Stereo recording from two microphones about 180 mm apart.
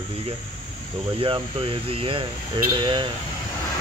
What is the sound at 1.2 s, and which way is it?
Speech, 30° right (ahead or behind).